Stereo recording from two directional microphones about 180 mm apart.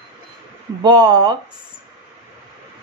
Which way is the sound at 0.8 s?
25° right (ahead or behind).